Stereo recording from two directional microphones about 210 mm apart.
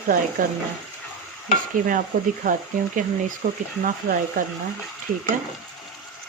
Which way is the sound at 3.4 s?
40° right (ahead or behind).